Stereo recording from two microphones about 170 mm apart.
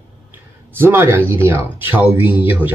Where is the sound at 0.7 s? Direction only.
15° right (ahead or behind).